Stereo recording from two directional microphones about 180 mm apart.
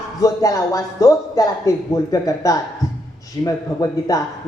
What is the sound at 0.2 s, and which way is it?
Speech, 20° left (ahead or behind).